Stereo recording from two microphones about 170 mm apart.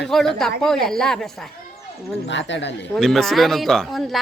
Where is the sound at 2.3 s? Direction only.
90° left.